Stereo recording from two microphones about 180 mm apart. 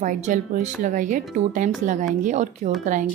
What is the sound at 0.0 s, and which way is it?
A woman's voice, 45° right (ahead or behind).